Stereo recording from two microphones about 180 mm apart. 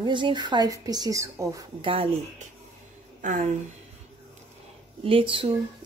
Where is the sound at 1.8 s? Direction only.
30° right (ahead or behind).